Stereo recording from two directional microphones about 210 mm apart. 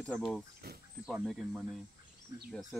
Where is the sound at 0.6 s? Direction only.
50° right (ahead or behind).